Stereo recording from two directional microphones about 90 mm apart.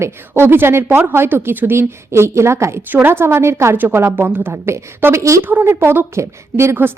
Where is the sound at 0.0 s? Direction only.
25° right (ahead or behind).